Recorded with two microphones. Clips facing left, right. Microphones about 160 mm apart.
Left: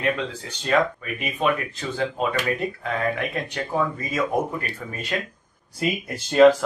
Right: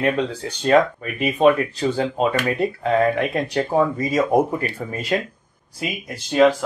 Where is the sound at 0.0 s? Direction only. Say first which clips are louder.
Right 5 dB; 35° right (ahead or behind).